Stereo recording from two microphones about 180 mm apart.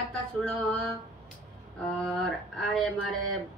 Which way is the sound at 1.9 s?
Centre (ahead or behind).